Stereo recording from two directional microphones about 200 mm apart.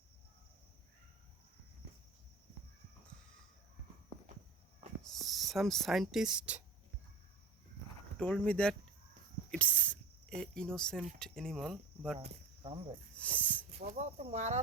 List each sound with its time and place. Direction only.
5.0 s speech: centre (ahead or behind)
8.2 s speech: 5° left (ahead or behind)
12.2 s cricket: 30° right (ahead or behind)
13.1 s speech: 5° left (ahead or behind)
13.7 s speech: 35° right (ahead or behind)